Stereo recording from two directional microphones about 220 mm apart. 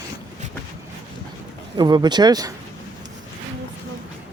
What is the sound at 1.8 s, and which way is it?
Speech, 20° right (ahead or behind).